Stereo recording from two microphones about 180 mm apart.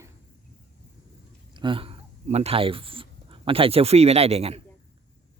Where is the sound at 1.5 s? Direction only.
30° right (ahead or behind).